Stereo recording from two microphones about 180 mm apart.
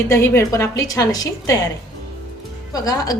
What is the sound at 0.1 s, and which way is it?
A woman's voice, 15° left (ahead or behind).